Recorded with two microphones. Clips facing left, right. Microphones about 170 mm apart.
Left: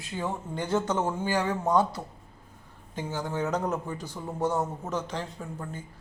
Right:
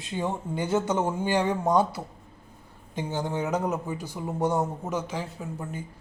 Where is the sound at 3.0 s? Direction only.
20° right (ahead or behind).